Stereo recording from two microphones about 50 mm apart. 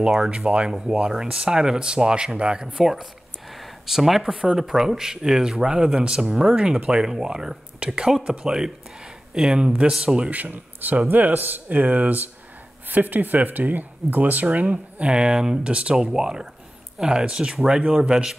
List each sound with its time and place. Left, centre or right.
0.3 s speech: right
2.8 s speech: centre
10.3 s speech: right
15.0 s speech: centre